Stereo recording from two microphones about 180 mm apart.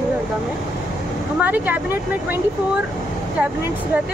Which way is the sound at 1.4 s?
10° right (ahead or behind).